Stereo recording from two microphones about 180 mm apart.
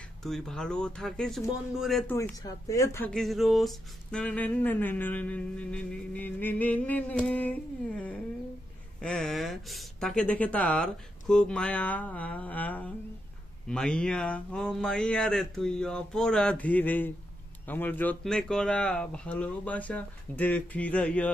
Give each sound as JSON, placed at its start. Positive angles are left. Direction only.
{"t": 0.2, "sound": "speech", "side_deg": 5}
{"t": 2.1, "sound": "speech", "side_deg": 15}